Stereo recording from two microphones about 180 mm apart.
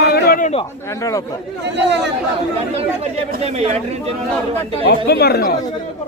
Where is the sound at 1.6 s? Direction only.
75° right (ahead or behind).